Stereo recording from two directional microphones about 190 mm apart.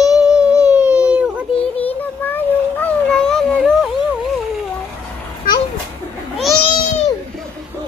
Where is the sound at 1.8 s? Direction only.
10° left (ahead or behind).